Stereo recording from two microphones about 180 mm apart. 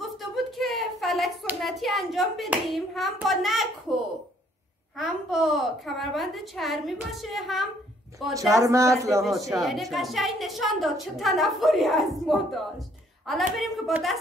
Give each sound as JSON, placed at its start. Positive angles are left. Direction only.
{"t": 0.0, "sound": "a sound", "side_deg": 0}
{"t": 4.9, "sound": "a woman's voice", "side_deg": 0}
{"t": 8.6, "sound": "speech", "side_deg": -15}
{"t": 9.5, "sound": "a woman's voice", "side_deg": 0}